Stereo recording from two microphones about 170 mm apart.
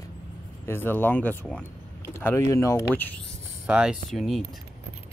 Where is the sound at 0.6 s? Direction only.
15° left (ahead or behind).